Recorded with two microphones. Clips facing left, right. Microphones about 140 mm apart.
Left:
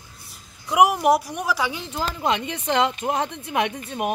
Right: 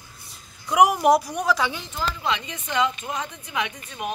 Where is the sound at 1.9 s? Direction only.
45° left (ahead or behind).